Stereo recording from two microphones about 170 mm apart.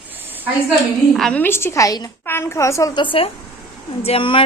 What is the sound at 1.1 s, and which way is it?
A woman's voice, 5° left (ahead or behind).